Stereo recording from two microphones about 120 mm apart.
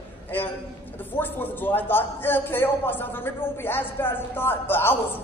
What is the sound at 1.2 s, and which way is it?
A man's voice, 15° left (ahead or behind).